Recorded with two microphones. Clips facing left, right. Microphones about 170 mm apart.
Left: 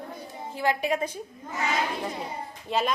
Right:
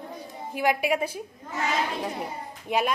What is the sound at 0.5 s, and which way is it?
Speech, 15° right (ahead or behind).